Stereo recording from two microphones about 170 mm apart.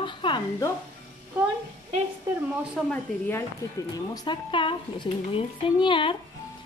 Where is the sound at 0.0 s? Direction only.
30° left (ahead or behind).